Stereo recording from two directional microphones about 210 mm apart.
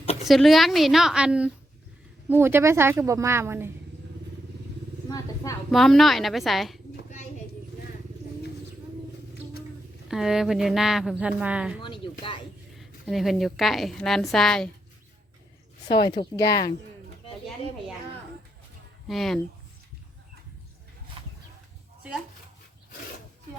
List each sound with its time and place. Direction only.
0.3 s a woman's voice: centre (ahead or behind)
5.0 s a sound: 15° left (ahead or behind)
5.7 s a woman's voice: centre (ahead or behind)
10.1 s a woman's voice: centre (ahead or behind)
11.8 s a sound: 25° left (ahead or behind)
12.7 s a woman's voice: centre (ahead or behind)
16.0 s speech: 20° left (ahead or behind)
19.0 s a woman's voice: centre (ahead or behind)